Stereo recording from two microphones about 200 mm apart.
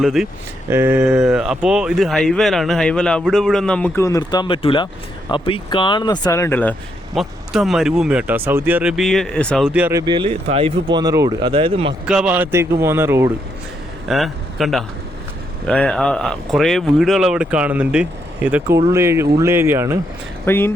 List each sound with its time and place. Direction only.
0.0 s speech: centre (ahead or behind)
10.1 s speech: 25° right (ahead or behind)
12.0 s speech: 5° right (ahead or behind)
14.1 s speech: centre (ahead or behind)
20.4 s speech: 10° left (ahead or behind)